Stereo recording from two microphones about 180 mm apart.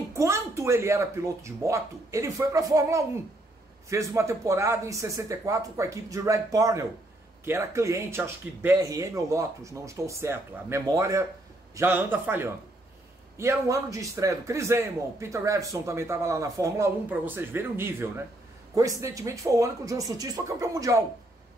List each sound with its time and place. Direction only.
0.1 s a man's voice: 15° right (ahead or behind)